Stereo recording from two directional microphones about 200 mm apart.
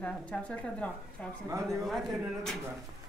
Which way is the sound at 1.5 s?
15° right (ahead or behind).